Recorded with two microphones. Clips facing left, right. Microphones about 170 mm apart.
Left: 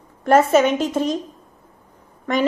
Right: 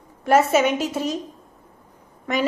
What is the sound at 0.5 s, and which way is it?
Speech, 5° right (ahead or behind).